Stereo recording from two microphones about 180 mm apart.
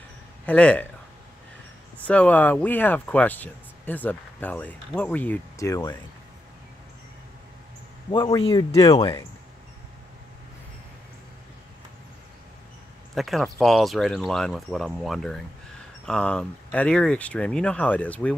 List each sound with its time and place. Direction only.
0.5 s speech: 5° left (ahead or behind)
2.0 s speech: 10° left (ahead or behind)
8.4 s speech: 25° left (ahead or behind)
13.1 s speech: centre (ahead or behind)